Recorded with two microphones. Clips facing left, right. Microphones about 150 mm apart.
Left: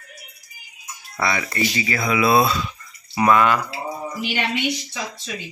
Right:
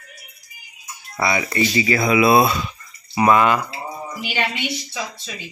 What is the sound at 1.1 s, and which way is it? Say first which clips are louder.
Speech: right 3 dB; 15° right (ahead or behind).